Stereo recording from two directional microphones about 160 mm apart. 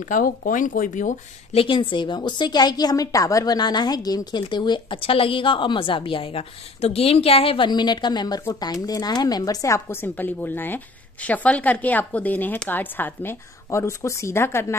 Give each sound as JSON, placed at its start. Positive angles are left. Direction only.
{"t": 0.1, "sound": "speech", "side_deg": 55}
{"t": 1.6, "sound": "a woman's voice", "side_deg": 35}